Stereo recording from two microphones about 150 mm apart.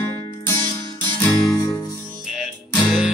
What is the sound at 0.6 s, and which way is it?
Music, 30° right (ahead or behind).